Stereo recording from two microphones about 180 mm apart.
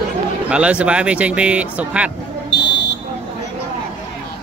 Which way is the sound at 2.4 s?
70° left (ahead or behind).